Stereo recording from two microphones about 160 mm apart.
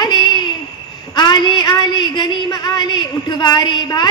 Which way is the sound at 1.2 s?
30° left (ahead or behind).